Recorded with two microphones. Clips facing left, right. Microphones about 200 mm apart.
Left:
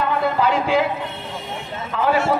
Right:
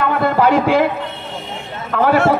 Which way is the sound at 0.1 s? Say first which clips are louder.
Right 6 dB; 60° right (ahead or behind).